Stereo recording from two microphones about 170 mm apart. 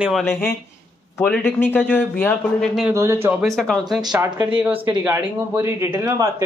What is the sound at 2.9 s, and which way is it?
Speech, 15° right (ahead or behind).